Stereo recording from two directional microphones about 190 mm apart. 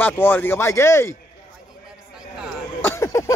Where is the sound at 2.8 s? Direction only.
15° left (ahead or behind).